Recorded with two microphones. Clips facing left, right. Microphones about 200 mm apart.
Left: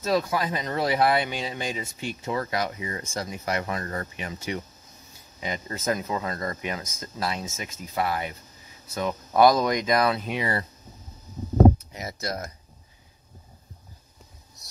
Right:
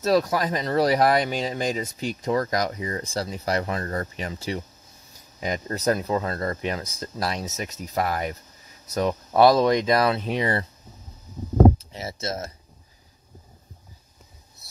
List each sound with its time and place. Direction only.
0.0 s speech: 40° right (ahead or behind)
9.4 s speech: 30° right (ahead or behind)
11.9 s speech: 30° right (ahead or behind)